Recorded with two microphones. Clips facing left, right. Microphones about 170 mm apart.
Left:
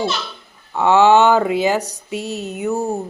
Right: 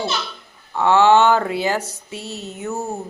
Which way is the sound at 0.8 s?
15° left (ahead or behind).